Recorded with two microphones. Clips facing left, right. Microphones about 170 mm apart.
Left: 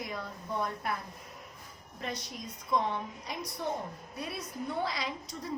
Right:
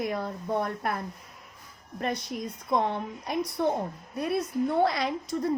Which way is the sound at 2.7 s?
55° right (ahead or behind).